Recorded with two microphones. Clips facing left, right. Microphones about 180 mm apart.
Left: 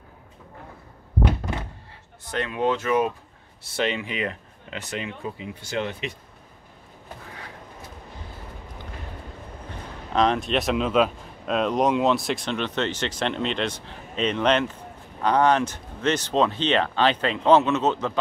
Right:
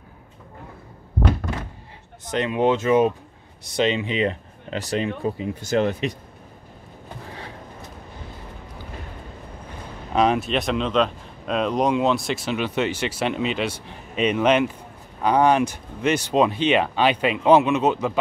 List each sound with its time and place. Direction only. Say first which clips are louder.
2.2 s speech: right 4 dB; 20° right (ahead or behind); by 6.1 s 40° right (ahead or behind)
10.1 s speech: right 2 dB; 10° right (ahead or behind)